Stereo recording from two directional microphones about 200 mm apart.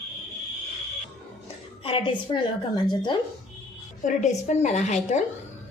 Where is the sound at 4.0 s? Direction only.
35° left (ahead or behind).